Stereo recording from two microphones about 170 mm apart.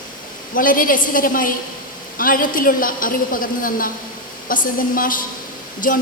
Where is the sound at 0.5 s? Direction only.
55° left (ahead or behind).